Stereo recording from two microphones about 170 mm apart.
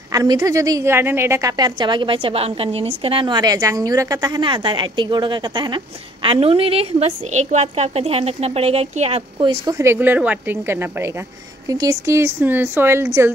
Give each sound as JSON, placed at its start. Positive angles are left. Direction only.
{"t": 0.1, "sound": "a woman's voice", "side_deg": -20}
{"t": 9.8, "sound": "speech", "side_deg": -15}